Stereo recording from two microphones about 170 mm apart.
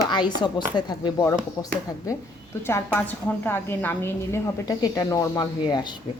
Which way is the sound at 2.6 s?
15° left (ahead or behind).